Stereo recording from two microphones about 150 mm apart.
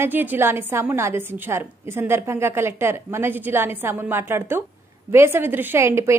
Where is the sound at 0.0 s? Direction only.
15° right (ahead or behind).